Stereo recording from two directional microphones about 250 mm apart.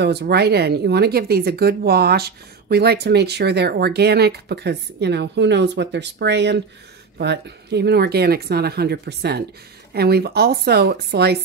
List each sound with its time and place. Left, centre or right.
0.0 s speech: right